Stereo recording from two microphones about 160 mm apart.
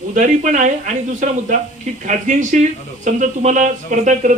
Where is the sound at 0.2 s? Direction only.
55° right (ahead or behind).